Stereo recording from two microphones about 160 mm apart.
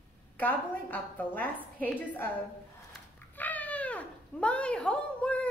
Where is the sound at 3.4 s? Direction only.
10° left (ahead or behind).